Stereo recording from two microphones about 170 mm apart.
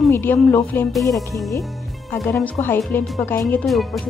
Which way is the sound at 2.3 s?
15° left (ahead or behind).